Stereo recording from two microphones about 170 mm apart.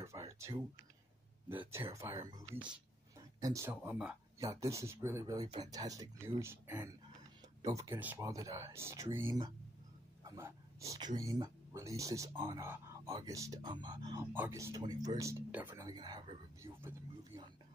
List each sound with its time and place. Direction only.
0.0 s speech: 15° right (ahead or behind)
10.2 s a sound: 15° right (ahead or behind)
11.1 s speech: 20° right (ahead or behind)
14.3 s speech: 15° right (ahead or behind)